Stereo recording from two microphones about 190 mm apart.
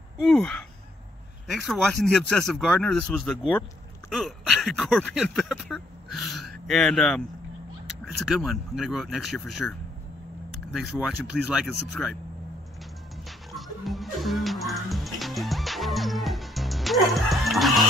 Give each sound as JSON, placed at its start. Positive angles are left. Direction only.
{"t": 0.2, "sound": "speech", "side_deg": 0}
{"t": 8.3, "sound": "speech", "side_deg": 0}
{"t": 13.5, "sound": "music", "side_deg": 0}